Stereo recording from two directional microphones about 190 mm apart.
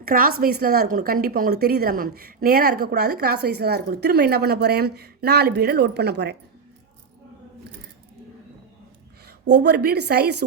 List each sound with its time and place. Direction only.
0.0 s a woman's voice: 50° right (ahead or behind)
9.2 s a woman's voice: 60° right (ahead or behind)